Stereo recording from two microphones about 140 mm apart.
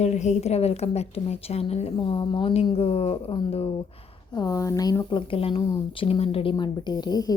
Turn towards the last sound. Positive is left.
turn(degrees=30)  # may be behind; listen again after turning